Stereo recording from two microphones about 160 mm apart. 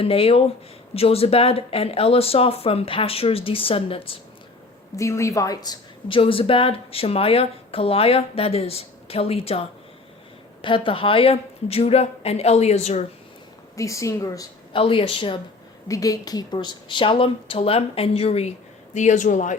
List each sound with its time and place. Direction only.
0.0 s speech: 35° left (ahead or behind)
4.9 s speech: 20° left (ahead or behind); by 13.1 s 45° left (ahead or behind)
13.7 s a woman's voice: 20° left (ahead or behind)
14.8 s speech: 35° left (ahead or behind)
15.9 s speech: 20° left (ahead or behind); by 18.5 s 40° left (ahead or behind)
18.9 s speech: 50° left (ahead or behind)